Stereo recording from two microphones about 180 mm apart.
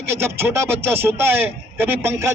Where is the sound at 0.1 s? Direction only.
15° right (ahead or behind).